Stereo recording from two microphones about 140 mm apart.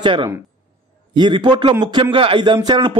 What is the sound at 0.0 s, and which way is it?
A man's voice, 35° right (ahead or behind).